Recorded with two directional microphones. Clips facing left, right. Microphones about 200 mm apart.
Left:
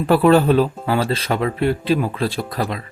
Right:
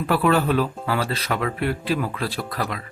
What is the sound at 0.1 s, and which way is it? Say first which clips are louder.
Speech: left 7 dB; 30° left (ahead or behind).